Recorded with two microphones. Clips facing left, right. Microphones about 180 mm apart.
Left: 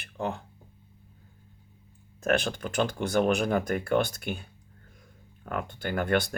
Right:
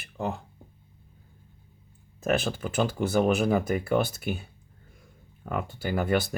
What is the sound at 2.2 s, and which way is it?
Speech, 5° right (ahead or behind).